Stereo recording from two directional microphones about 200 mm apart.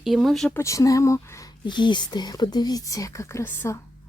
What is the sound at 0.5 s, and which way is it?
Speech, 15° left (ahead or behind).